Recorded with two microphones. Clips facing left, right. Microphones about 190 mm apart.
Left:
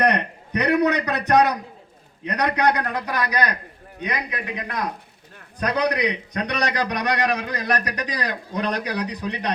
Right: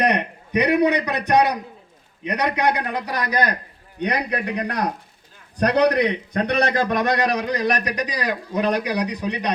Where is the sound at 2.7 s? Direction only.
30° right (ahead or behind).